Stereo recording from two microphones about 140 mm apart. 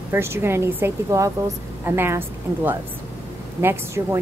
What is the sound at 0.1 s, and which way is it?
A woman's voice, 15° right (ahead or behind).